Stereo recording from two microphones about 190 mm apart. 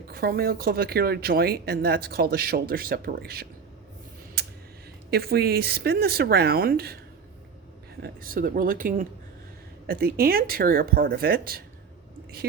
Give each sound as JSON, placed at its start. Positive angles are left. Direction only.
{"t": 0.1, "sound": "speech", "side_deg": -50}
{"t": 5.1, "sound": "speech", "side_deg": -55}
{"t": 8.0, "sound": "speech", "side_deg": -50}